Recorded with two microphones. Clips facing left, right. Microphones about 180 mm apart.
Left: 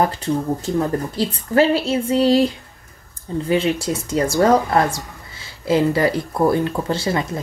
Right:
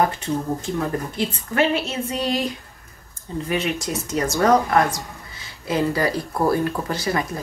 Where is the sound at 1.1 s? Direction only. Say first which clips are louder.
Left 5 dB; 35° left (ahead or behind).